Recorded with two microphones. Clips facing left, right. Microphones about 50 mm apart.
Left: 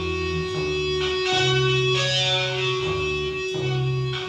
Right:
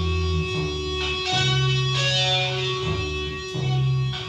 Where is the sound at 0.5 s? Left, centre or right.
Left.